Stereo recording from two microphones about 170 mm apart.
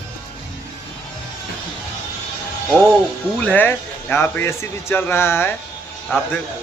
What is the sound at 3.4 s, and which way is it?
Speech, 10° left (ahead or behind).